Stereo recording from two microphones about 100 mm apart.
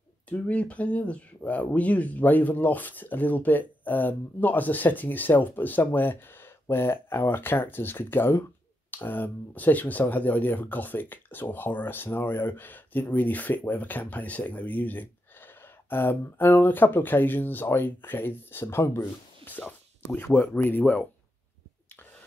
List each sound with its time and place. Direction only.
0.3 s speech: 15° left (ahead or behind)